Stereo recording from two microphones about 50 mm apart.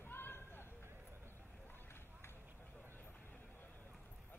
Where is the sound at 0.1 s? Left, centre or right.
Left.